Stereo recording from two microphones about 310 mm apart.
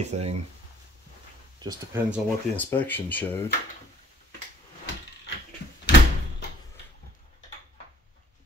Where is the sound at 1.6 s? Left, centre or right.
Centre.